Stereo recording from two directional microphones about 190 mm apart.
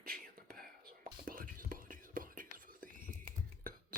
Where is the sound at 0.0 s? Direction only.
50° right (ahead or behind).